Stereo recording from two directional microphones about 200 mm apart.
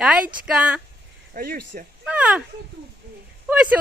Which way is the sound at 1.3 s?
45° right (ahead or behind).